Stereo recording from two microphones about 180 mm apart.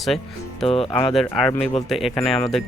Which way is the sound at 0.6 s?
35° left (ahead or behind).